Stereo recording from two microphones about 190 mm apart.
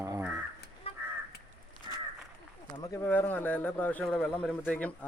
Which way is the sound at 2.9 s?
10° left (ahead or behind).